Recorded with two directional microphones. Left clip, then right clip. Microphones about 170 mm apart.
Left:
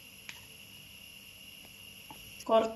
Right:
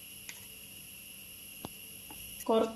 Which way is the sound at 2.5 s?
40° right (ahead or behind).